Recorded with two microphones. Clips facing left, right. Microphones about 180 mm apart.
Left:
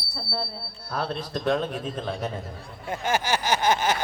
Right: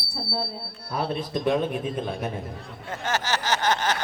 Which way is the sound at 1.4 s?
10° right (ahead or behind).